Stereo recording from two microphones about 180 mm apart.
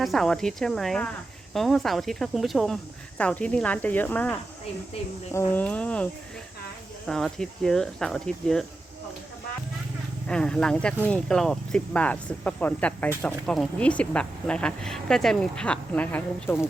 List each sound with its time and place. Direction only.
0.0 s speech: centre (ahead or behind)
7.1 s speech: centre (ahead or behind)
10.2 s speech: 5° left (ahead or behind)